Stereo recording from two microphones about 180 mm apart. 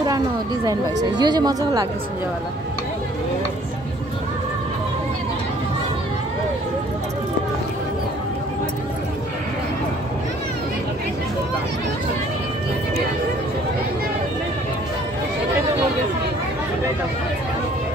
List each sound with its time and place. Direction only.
1.1 s speech: 25° right (ahead or behind)